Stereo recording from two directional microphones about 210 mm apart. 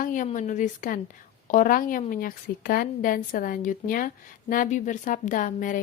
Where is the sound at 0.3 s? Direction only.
35° left (ahead or behind).